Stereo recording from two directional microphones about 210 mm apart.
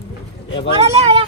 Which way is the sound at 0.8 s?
30° right (ahead or behind).